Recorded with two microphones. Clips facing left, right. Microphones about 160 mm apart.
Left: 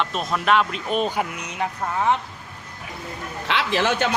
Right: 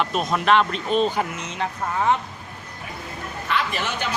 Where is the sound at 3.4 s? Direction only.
90° left.